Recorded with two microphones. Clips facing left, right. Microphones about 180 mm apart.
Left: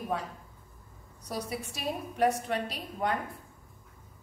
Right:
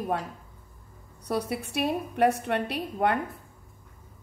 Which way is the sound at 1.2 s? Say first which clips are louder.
Right 6 dB; 60° right (ahead or behind).